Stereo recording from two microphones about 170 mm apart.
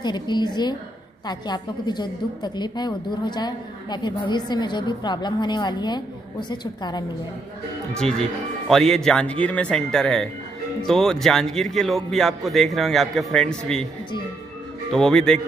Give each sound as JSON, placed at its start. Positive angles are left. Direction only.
{"t": 0.0, "sound": "a woman's voice", "side_deg": 25}
{"t": 7.9, "sound": "a man's voice", "side_deg": 5}
{"t": 14.9, "sound": "a man's voice", "side_deg": 5}